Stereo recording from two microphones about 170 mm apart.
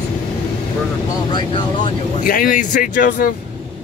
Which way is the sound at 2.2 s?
55° left (ahead or behind).